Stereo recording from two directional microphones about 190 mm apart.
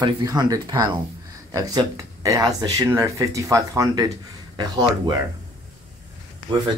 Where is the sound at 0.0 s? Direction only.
20° right (ahead or behind).